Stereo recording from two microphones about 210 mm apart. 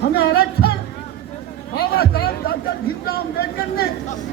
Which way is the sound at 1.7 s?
45° left (ahead or behind).